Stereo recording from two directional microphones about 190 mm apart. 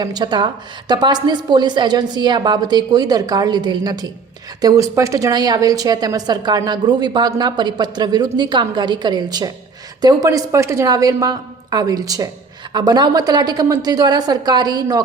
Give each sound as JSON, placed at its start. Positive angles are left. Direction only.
{"t": 0.0, "sound": "a woman's voice", "side_deg": -20}